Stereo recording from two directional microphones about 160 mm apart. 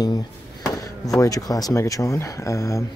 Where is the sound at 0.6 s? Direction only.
20° left (ahead or behind).